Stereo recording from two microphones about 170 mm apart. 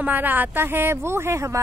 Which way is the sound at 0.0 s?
10° right (ahead or behind).